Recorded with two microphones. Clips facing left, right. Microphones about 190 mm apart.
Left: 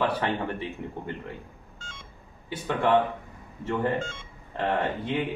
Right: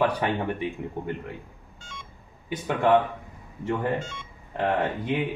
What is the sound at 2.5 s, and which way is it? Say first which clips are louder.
Speech: right 2 dB; 15° right (ahead or behind).